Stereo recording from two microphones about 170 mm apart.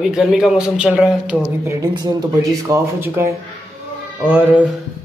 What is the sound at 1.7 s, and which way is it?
Speech, 20° right (ahead or behind).